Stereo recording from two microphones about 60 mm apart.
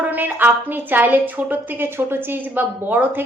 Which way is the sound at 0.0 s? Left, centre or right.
Right.